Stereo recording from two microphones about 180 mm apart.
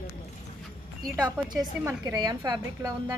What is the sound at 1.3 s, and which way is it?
Speech, 5° right (ahead or behind).